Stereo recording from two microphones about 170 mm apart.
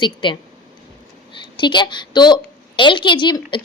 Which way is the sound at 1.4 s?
25° left (ahead or behind).